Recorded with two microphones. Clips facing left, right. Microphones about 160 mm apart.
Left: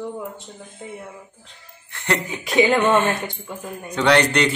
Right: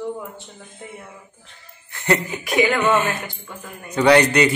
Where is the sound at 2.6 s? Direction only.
30° left (ahead or behind).